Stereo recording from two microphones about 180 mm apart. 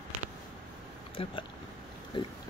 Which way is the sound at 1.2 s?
30° left (ahead or behind).